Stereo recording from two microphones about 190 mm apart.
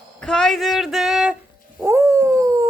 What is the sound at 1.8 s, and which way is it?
Dog, 15° right (ahead or behind).